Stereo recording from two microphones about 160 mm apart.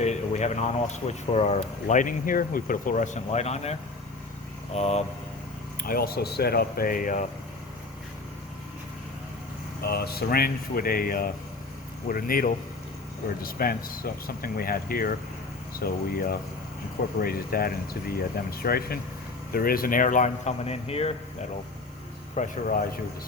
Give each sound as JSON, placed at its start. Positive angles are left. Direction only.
{"t": 0.0, "sound": "speech", "side_deg": 45}
{"t": 5.8, "sound": "speech", "side_deg": 70}
{"t": 9.8, "sound": "speech", "side_deg": 80}
{"t": 22.4, "sound": "speech", "side_deg": 60}